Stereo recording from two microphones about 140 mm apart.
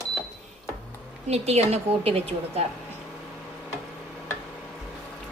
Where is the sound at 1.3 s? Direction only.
50° right (ahead or behind).